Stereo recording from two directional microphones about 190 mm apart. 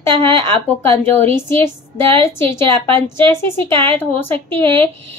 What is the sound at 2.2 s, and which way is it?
Speech, 15° left (ahead or behind).